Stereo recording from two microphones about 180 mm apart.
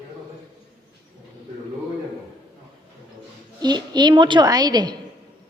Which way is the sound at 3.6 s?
25° right (ahead or behind).